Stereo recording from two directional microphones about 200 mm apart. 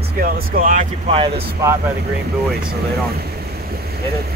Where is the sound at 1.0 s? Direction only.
25° right (ahead or behind).